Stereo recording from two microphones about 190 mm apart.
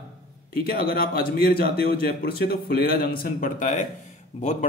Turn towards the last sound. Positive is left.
turn(degrees=35)  # may be behind; listen again after turning